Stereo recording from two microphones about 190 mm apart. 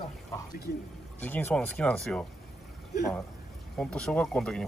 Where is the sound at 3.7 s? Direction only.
5° left (ahead or behind).